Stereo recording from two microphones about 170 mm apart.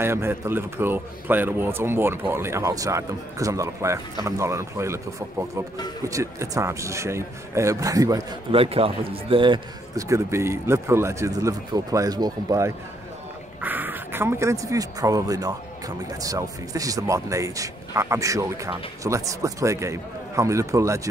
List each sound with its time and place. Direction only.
0.0 s speech: 15° right (ahead or behind)
6.0 s speech: 20° right (ahead or behind)
8.5 s speech: 35° right (ahead or behind); by 21.1 s 20° right (ahead or behind)